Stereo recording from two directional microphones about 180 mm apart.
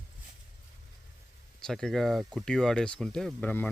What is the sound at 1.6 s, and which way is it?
Speech, centre (ahead or behind).